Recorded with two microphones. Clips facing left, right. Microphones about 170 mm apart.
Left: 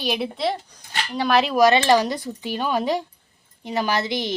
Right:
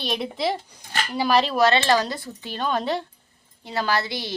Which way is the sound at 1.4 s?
10° left (ahead or behind).